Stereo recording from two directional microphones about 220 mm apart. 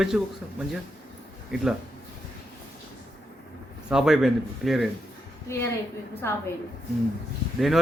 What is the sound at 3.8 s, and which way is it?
Speech, centre (ahead or behind).